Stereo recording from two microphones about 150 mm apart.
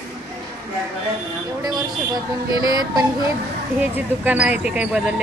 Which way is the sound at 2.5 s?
25° right (ahead or behind).